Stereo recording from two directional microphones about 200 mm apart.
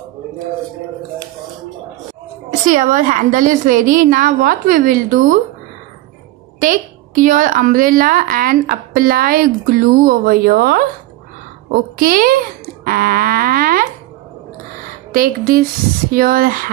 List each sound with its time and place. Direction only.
2.6 s a woman's voice: 40° right (ahead or behind)
6.6 s a woman's voice: 40° right (ahead or behind)
12.0 s a woman's voice: 45° right (ahead or behind)
15.1 s a woman's voice: 45° right (ahead or behind)